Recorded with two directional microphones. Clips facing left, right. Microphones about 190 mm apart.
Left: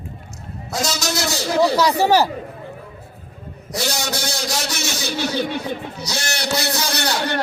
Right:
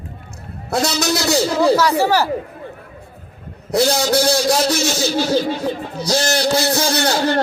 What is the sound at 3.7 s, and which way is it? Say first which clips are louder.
A man's voice: right 9 dB; 60° right (ahead or behind).